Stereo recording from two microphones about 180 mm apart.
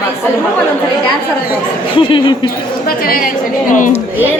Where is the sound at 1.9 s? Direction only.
30° left (ahead or behind).